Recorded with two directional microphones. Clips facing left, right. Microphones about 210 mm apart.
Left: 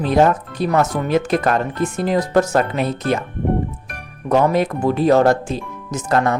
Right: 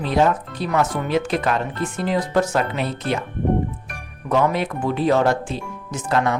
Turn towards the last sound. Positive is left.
turn(degrees=45)  # may be behind; listen again after turning